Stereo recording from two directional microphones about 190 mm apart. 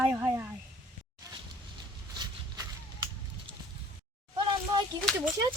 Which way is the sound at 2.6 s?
20° right (ahead or behind).